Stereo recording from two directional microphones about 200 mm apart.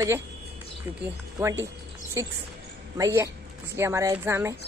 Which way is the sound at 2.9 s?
15° right (ahead or behind).